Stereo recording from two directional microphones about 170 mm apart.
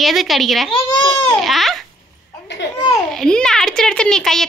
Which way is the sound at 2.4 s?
90° left.